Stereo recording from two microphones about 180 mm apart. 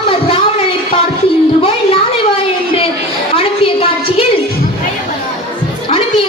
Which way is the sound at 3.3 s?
35° left (ahead or behind).